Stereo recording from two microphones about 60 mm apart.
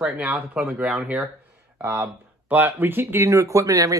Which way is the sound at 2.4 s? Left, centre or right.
Right.